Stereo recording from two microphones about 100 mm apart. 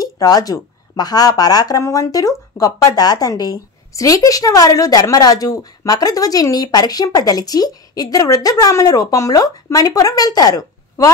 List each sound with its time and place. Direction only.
0.0 s speech: 40° left (ahead or behind)